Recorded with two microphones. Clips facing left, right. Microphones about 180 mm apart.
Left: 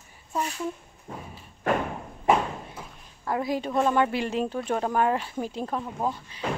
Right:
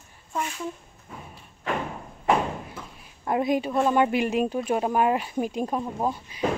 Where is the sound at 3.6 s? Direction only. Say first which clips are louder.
Right 1 dB; 10° right (ahead or behind).